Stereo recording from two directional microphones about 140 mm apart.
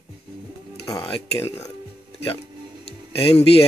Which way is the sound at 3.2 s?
45° left (ahead or behind).